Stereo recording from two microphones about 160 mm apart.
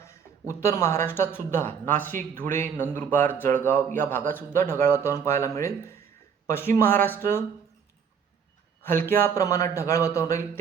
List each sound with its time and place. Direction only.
0.0 s speech: 15° left (ahead or behind)
9.0 s speech: 15° left (ahead or behind)